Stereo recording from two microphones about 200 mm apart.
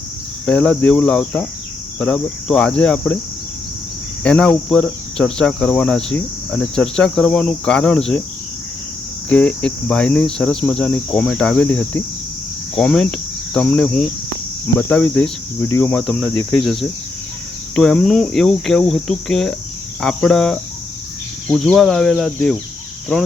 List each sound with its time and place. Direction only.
0.4 s cricket: 5° left (ahead or behind)
4.2 s cricket: 5° left (ahead or behind)
9.3 s cricket: 5° left (ahead or behind)
14.8 s speech: 10° left (ahead or behind)
16.3 s speech: 20° left (ahead or behind)
17.7 s cricket: centre (ahead or behind)